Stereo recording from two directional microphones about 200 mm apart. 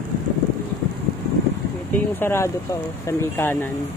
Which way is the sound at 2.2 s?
10° left (ahead or behind).